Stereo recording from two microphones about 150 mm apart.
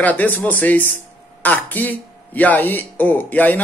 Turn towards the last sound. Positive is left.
turn(degrees=10)  # may be behind; listen again after turning